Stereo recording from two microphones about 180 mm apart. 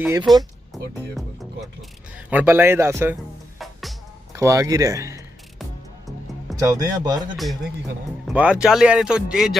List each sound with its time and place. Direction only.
0.0 s speech: 10° right (ahead or behind)
1.1 s speech: centre (ahead or behind)
3.5 s music: centre (ahead or behind)
4.4 s speech: 15° right (ahead or behind)
6.6 s speech: 20° right (ahead or behind)
8.3 s speech: 5° right (ahead or behind)